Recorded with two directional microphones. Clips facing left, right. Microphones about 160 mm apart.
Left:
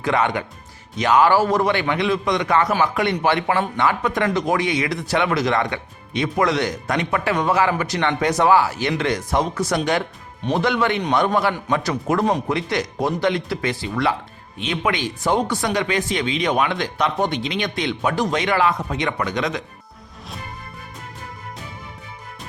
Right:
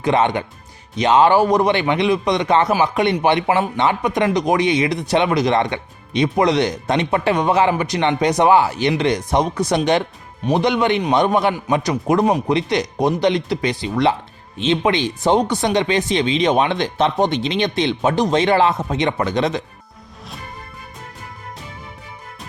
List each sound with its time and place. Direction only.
0.0 s speech: 20° right (ahead or behind)